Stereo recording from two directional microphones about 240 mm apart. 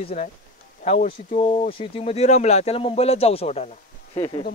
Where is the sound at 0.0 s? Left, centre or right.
Left.